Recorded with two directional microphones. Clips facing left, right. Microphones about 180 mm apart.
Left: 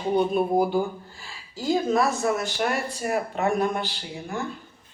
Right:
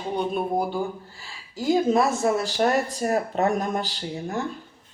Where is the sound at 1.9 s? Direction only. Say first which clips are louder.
Right 2 dB; 25° right (ahead or behind); by 4.0 s 40° right (ahead or behind).